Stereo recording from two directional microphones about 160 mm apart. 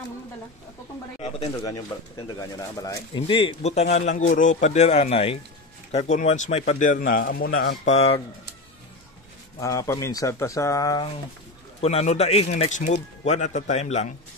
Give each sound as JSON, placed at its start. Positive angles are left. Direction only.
{"t": 2.3, "sound": "a man's voice", "side_deg": 20}
{"t": 3.2, "sound": "speech", "side_deg": 35}
{"t": 7.8, "sound": "speech", "side_deg": 40}
{"t": 9.6, "sound": "a man's voice", "side_deg": 20}
{"t": 11.8, "sound": "speech", "side_deg": 40}